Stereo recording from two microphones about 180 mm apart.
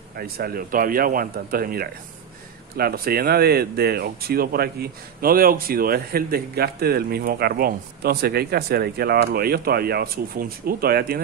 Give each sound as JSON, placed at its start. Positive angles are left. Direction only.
{"t": 0.1, "sound": "speech", "side_deg": -55}